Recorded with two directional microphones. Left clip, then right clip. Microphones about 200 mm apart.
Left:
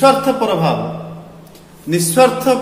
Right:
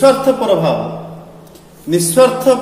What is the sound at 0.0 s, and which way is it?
Speech, 30° left (ahead or behind).